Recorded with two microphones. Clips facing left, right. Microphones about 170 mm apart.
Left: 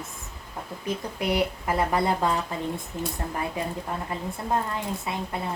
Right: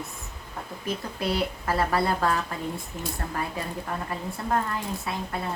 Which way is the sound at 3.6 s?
20° left (ahead or behind).